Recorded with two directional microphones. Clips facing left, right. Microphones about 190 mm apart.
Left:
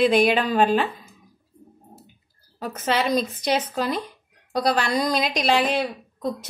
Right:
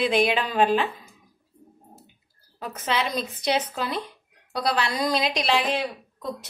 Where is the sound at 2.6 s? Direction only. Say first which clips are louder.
Left 3 dB; 45° left (ahead or behind).